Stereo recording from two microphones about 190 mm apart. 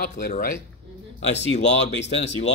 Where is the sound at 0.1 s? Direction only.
45° left (ahead or behind).